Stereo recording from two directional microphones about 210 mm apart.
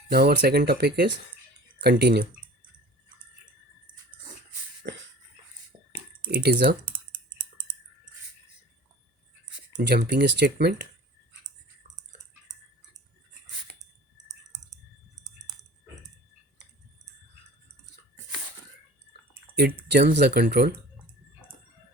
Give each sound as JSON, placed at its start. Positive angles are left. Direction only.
{"t": 0.1, "sound": "speech", "side_deg": -50}
{"t": 6.2, "sound": "speech", "side_deg": -45}
{"t": 9.9, "sound": "speech", "side_deg": -50}
{"t": 19.3, "sound": "speech", "side_deg": -45}